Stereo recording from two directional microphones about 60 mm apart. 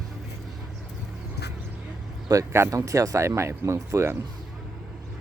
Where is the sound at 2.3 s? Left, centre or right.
Right.